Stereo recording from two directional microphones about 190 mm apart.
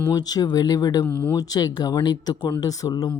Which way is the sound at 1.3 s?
20° left (ahead or behind).